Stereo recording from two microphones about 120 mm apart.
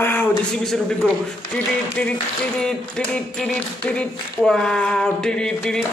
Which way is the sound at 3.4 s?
10° left (ahead or behind).